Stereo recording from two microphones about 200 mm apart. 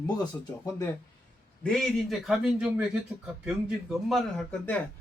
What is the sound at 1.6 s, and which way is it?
Speech, 5° left (ahead or behind).